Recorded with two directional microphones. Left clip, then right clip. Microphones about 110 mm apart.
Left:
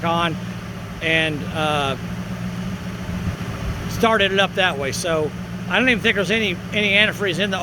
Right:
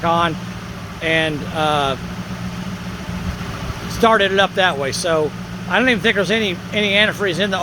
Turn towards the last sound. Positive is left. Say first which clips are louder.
# right 3 dB
turn(degrees=-45)  # may be behind; listen again after turning